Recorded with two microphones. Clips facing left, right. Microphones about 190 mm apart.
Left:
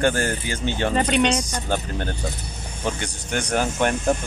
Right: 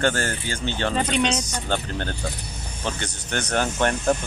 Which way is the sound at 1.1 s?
60° left (ahead or behind).